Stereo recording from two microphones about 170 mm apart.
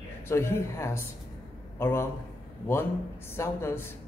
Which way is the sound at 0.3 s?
15° left (ahead or behind).